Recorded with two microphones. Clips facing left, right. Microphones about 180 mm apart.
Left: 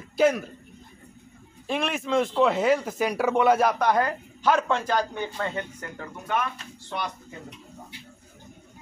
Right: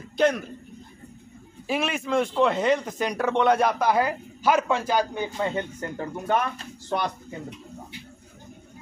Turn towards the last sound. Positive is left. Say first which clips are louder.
# right 5 dB
turn(degrees=-40)  # may be behind; listen again after turning